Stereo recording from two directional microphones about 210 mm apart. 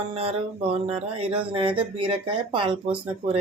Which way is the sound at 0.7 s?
30° right (ahead or behind).